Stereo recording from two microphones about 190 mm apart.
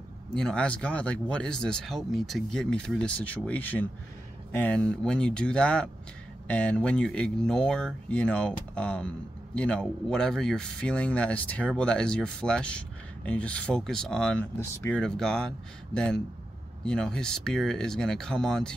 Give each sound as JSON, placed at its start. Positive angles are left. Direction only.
{"t": 0.3, "sound": "speech", "side_deg": 5}